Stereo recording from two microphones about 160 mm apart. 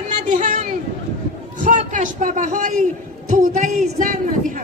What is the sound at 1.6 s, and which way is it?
A man's voice, 50° right (ahead or behind).